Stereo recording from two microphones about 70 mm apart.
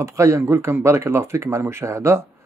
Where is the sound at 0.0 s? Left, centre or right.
Right.